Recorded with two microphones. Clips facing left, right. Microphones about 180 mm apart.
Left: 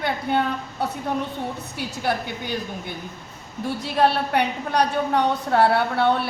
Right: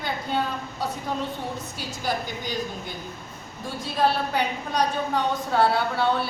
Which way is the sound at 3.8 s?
65° left (ahead or behind).